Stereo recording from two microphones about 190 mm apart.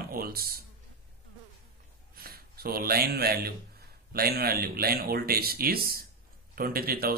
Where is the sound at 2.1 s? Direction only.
55° right (ahead or behind).